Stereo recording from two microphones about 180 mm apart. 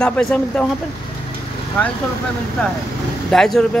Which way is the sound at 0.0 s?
5° left (ahead or behind).